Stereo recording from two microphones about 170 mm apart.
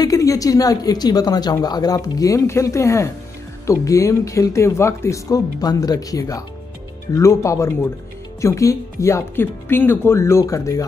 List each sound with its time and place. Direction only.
0.0 s speech: 20° left (ahead or behind)